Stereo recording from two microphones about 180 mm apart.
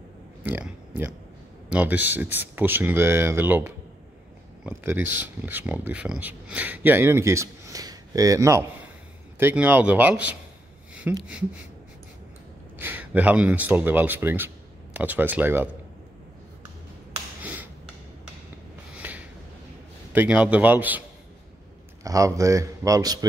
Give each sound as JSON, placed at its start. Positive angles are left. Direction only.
{"t": 0.4, "sound": "speech", "side_deg": -10}
{"t": 12.7, "sound": "speech", "side_deg": -10}
{"t": 17.4, "sound": "a sound", "side_deg": -10}
{"t": 18.9, "sound": "a sound", "side_deg": -10}
{"t": 20.1, "sound": "speech", "side_deg": -5}
{"t": 22.0, "sound": "speech", "side_deg": -20}